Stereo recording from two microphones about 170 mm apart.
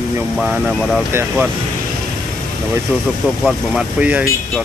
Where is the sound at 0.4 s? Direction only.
Centre (ahead or behind).